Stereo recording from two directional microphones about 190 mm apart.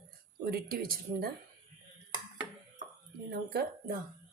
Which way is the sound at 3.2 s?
55° right (ahead or behind).